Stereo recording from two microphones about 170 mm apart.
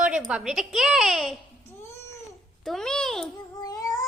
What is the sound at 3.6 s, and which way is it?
Child singing, 20° left (ahead or behind).